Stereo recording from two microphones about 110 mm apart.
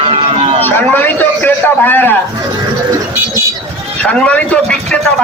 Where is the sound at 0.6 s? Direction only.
15° left (ahead or behind).